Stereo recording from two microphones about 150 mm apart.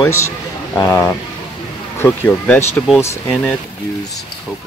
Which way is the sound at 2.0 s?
15° left (ahead or behind).